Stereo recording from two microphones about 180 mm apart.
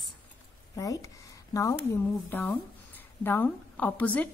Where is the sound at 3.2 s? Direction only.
10° left (ahead or behind).